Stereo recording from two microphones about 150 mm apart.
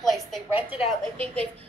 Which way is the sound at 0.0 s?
Centre (ahead or behind).